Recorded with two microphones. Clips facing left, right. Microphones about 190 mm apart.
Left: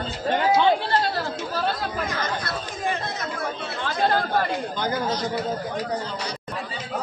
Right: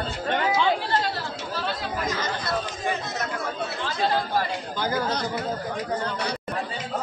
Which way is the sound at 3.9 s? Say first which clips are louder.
Left 2 dB; 55° left (ahead or behind).